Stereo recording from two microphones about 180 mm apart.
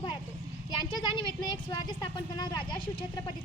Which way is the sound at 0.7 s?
25° left (ahead or behind).